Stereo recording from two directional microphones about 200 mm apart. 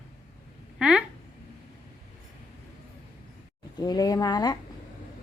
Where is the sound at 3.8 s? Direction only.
20° left (ahead or behind).